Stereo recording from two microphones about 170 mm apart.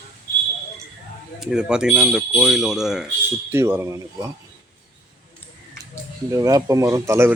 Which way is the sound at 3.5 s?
15° right (ahead or behind).